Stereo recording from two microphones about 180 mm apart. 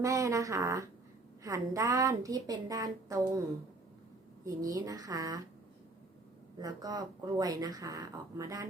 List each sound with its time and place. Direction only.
0.0 s speech: 20° right (ahead or behind)
4.4 s speech: 20° right (ahead or behind)
6.6 s speech: 20° right (ahead or behind)